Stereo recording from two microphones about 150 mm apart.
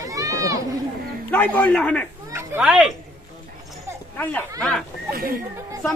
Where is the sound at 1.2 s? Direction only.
10° left (ahead or behind).